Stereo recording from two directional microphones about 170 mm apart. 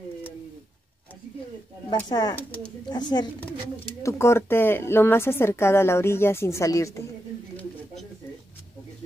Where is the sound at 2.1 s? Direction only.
25° left (ahead or behind).